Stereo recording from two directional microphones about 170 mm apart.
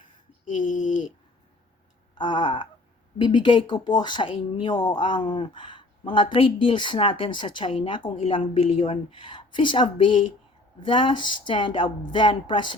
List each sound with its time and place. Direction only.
0.6 s speech: 50° left (ahead or behind)
2.1 s a woman's voice: 30° left (ahead or behind)